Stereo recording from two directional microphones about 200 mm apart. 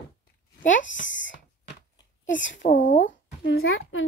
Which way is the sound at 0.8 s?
65° left (ahead or behind).